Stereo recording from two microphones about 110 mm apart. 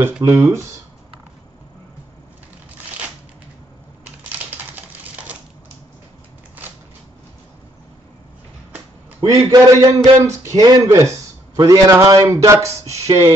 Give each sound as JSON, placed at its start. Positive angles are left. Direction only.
{"t": 0.2, "sound": "a man's voice", "side_deg": -30}
{"t": 4.3, "sound": "typing", "side_deg": -15}
{"t": 6.6, "sound": "a sound", "side_deg": -15}
{"t": 9.2, "sound": "a man's voice", "side_deg": -30}